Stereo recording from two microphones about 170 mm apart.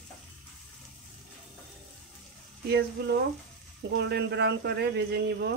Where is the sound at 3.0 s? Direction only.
65° right (ahead or behind).